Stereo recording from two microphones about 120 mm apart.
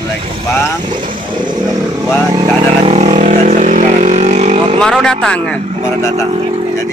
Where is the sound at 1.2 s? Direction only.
40° right (ahead or behind).